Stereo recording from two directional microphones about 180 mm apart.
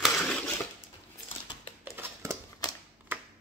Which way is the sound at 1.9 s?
15° right (ahead or behind).